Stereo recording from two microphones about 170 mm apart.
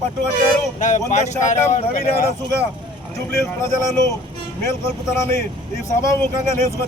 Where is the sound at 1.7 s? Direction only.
55° left (ahead or behind).